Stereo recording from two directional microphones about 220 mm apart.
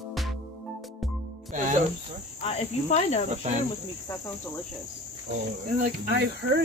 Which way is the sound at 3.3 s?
30° right (ahead or behind).